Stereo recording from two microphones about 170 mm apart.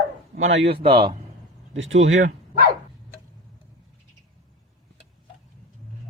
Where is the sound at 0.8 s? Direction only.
30° right (ahead or behind).